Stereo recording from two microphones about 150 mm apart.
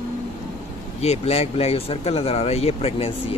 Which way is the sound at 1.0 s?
45° left (ahead or behind).